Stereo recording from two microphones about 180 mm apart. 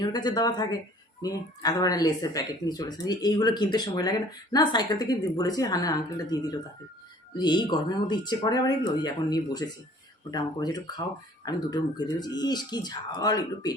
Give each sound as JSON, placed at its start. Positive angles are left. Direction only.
{"t": 0.0, "sound": "speech", "side_deg": 25}